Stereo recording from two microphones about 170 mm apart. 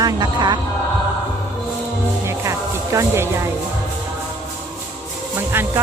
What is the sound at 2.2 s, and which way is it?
Music, 15° right (ahead or behind).